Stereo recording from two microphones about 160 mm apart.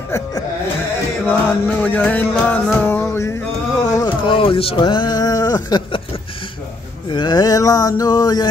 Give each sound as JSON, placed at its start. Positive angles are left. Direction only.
{"t": 1.2, "sound": "music", "side_deg": 10}
{"t": 3.9, "sound": "speech", "side_deg": 25}
{"t": 7.1, "sound": "a sound", "side_deg": 30}